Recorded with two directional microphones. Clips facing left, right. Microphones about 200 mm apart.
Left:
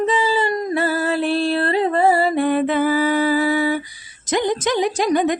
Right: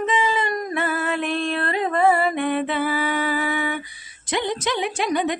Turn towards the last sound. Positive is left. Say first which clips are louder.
# left 5 dB
turn(degrees=45)  # may be behind; listen again after turning